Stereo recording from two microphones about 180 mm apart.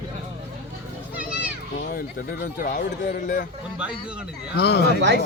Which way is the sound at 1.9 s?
55° left (ahead or behind).